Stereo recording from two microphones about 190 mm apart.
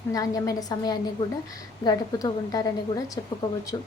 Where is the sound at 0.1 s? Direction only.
20° left (ahead or behind).